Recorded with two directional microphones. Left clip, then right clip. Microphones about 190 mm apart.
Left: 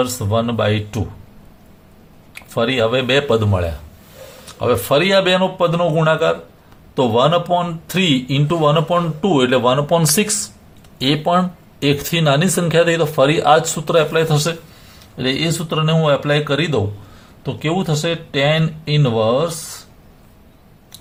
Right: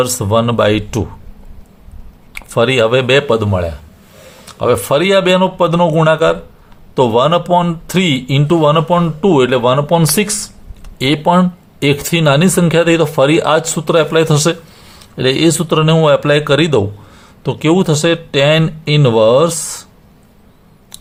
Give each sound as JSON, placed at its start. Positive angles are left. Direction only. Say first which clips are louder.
{"t": 0.0, "sound": "speech", "louder": "right 5 dB", "side_deg": -45}
{"t": 2.3, "sound": "speech", "louder": "right 6 dB", "side_deg": -40}